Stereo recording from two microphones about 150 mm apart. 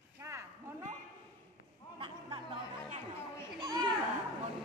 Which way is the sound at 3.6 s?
25° right (ahead or behind).